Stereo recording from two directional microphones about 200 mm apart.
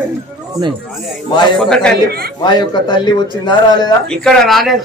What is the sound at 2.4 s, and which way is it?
A man's voice, 20° left (ahead or behind).